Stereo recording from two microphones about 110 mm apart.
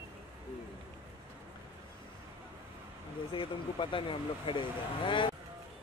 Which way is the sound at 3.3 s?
50° left (ahead or behind).